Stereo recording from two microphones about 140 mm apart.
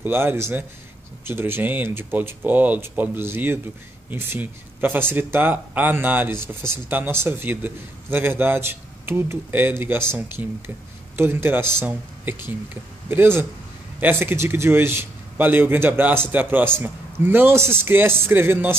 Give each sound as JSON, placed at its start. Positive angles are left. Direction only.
{"t": 0.0, "sound": "a man's voice", "side_deg": -15}